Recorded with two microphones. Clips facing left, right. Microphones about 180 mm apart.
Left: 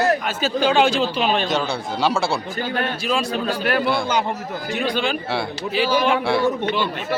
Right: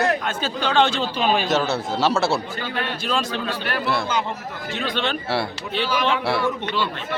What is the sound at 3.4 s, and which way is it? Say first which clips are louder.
Speech: left 5 dB; 45° left (ahead or behind).